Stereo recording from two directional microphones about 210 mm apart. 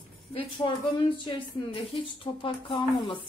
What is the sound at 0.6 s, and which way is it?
Speech, 20° left (ahead or behind).